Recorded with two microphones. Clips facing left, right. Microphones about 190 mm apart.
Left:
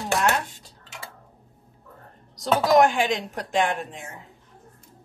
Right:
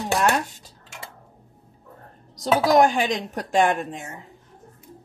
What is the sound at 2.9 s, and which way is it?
Speech, 40° right (ahead or behind).